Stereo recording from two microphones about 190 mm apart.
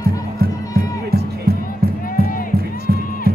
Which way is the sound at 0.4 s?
55° right (ahead or behind).